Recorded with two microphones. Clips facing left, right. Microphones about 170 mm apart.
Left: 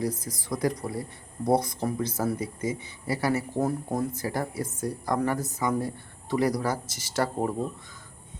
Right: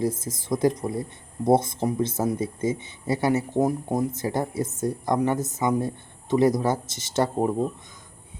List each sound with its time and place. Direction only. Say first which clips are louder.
0.0 s speech: right 4 dB; 25° right (ahead or behind)